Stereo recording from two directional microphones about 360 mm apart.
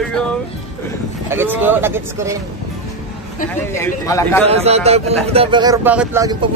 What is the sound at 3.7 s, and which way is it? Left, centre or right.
Speech, centre.